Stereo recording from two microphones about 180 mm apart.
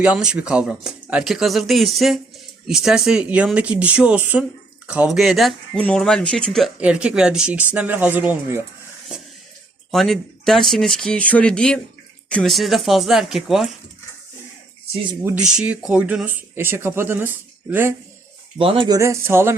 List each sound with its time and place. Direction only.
0.0 s speech: 5° right (ahead or behind)
9.9 s speech: centre (ahead or behind)
15.2 s speech: 10° right (ahead or behind)
18.5 s speech: 30° right (ahead or behind)
18.9 s speech: 15° right (ahead or behind)